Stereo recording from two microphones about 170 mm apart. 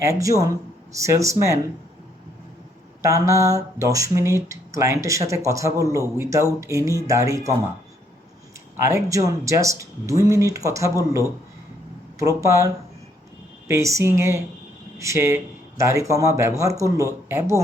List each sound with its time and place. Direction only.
0.2 s speech: 20° right (ahead or behind)
3.0 s speech: 20° right (ahead or behind)
8.8 s speech: 20° right (ahead or behind)